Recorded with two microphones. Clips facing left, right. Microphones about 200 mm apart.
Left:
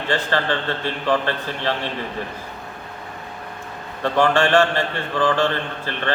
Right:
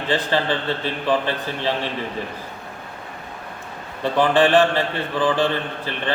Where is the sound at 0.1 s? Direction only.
15° right (ahead or behind).